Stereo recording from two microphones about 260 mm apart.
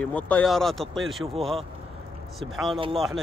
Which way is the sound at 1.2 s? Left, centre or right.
Right.